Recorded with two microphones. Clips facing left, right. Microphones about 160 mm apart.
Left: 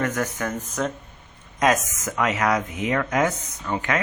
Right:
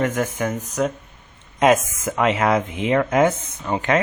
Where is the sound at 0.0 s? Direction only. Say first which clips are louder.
Right 4 dB; 15° right (ahead or behind).